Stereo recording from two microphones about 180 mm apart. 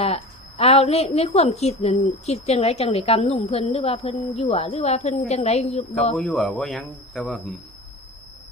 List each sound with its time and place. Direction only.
0.0 s a woman's voice: 35° left (ahead or behind)
6.1 s speech: centre (ahead or behind)